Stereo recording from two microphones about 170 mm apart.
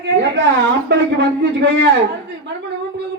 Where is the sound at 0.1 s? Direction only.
90° right.